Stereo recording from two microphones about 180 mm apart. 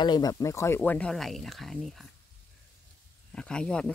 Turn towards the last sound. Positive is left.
turn(degrees=5)  # may be behind; listen again after turning